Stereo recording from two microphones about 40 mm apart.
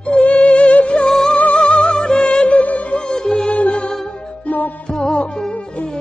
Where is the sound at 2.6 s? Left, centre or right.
Left.